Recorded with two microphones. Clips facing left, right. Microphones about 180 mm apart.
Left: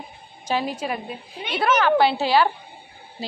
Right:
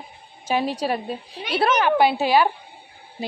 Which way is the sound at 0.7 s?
35° right (ahead or behind).